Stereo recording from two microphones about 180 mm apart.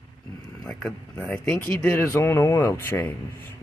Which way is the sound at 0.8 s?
5° left (ahead or behind).